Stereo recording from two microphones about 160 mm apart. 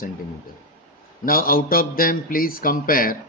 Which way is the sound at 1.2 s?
65° left (ahead or behind).